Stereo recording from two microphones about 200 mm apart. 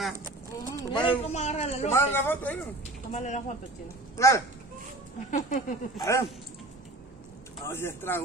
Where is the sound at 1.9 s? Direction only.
10° left (ahead or behind).